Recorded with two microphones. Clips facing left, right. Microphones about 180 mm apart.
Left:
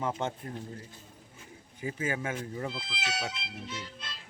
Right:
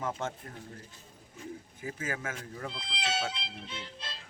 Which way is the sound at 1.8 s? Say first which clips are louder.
Left 5 dB; 25° left (ahead or behind).